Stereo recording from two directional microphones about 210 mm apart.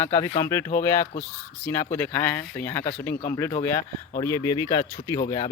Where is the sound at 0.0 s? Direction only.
15° left (ahead or behind).